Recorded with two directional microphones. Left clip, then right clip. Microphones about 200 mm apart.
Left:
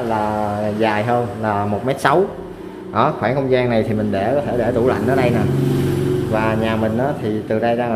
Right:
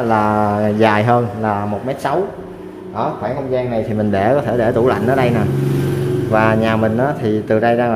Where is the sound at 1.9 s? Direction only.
5° left (ahead or behind).